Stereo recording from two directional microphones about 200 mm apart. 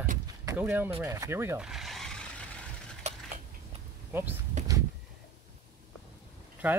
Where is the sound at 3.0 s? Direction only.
35° right (ahead or behind).